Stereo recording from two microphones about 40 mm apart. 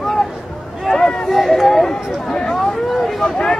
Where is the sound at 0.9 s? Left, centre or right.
Centre.